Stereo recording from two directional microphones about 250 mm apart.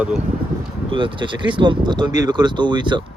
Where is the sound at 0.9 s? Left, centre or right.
Centre.